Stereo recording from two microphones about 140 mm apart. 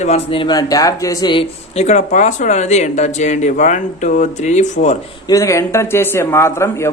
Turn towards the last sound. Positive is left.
turn(degrees=20)  # may be behind; listen again after turning